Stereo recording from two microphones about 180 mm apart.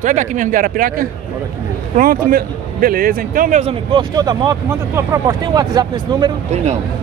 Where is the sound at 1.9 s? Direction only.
55° right (ahead or behind).